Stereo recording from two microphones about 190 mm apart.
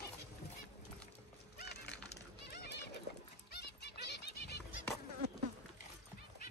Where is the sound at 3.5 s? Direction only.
60° left (ahead or behind).